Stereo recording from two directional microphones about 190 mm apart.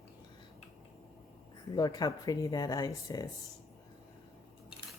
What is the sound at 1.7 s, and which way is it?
Speech, 20° left (ahead or behind).